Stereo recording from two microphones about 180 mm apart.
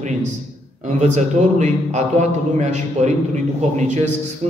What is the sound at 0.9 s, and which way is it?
A man's voice, 40° right (ahead or behind).